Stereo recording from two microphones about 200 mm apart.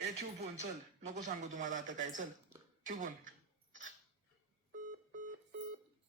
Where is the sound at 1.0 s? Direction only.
35° right (ahead or behind).